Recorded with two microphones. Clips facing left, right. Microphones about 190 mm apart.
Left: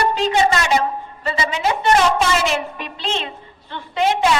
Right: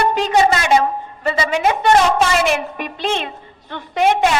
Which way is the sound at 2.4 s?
50° right (ahead or behind).